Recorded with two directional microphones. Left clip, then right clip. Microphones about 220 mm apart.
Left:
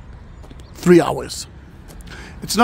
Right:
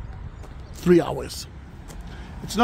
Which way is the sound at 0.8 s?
25° left (ahead or behind).